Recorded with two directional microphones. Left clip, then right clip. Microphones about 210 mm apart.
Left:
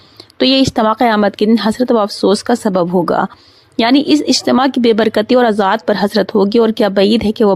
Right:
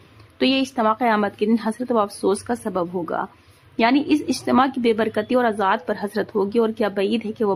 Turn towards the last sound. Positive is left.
turn(degrees=35)  # may be behind; listen again after turning